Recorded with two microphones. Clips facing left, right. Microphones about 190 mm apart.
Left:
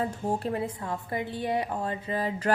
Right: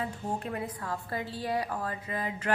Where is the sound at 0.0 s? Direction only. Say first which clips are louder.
Left 5 dB; 35° left (ahead or behind).